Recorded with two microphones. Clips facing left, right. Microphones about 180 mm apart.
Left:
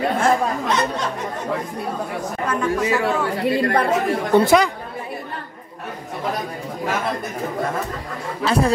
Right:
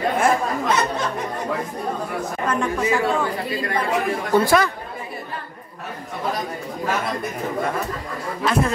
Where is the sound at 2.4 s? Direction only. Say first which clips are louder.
Left 1 dB; 5° left (ahead or behind).